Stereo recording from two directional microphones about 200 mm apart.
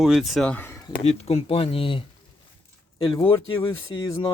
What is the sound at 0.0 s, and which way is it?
Speech, centre (ahead or behind).